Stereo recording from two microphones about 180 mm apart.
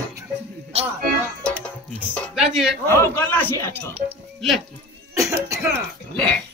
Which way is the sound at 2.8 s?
15° left (ahead or behind).